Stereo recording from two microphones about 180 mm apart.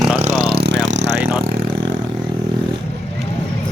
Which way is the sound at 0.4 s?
65° right (ahead or behind).